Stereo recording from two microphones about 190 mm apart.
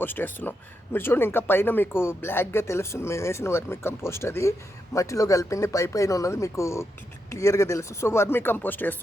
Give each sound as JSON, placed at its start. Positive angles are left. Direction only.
{"t": 0.0, "sound": "speech", "side_deg": 10}